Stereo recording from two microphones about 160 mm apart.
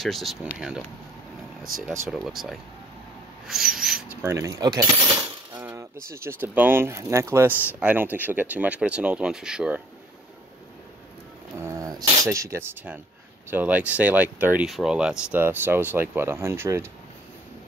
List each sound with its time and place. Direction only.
0.0 s speech: centre (ahead or behind)
4.2 s speech: 20° right (ahead or behind)
5.1 s coin: 15° right (ahead or behind)
6.1 s speech: 15° right (ahead or behind)
11.5 s a sound: 20° right (ahead or behind)
12.2 s speech: 20° right (ahead or behind)